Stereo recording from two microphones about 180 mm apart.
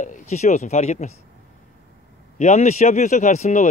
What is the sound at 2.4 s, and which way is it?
Speech, 40° left (ahead or behind).